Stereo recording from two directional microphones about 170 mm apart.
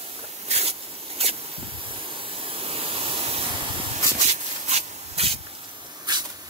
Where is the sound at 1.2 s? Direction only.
35° right (ahead or behind).